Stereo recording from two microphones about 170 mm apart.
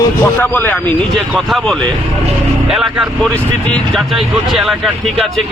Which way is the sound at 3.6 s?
5° left (ahead or behind).